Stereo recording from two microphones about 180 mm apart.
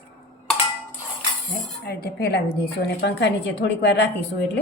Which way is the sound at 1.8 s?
60° left (ahead or behind).